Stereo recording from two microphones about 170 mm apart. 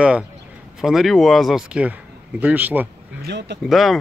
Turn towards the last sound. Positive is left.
turn(degrees=0)  # may be behind; listen again after turning